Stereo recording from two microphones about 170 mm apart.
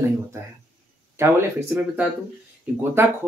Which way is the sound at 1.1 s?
15° right (ahead or behind).